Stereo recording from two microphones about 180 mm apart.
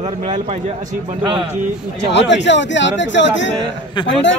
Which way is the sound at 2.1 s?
80° left.